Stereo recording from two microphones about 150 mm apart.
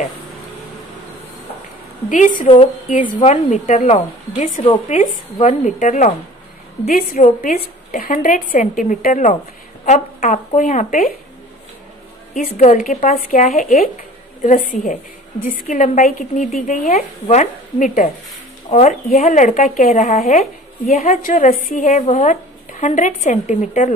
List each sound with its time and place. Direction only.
2.0 s a woman's voice: 60° left (ahead or behind)
6.9 s speech: 75° left (ahead or behind)
12.4 s a woman's voice: 55° left (ahead or behind)